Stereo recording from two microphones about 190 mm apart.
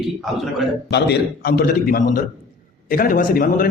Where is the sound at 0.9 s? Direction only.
60° left (ahead or behind).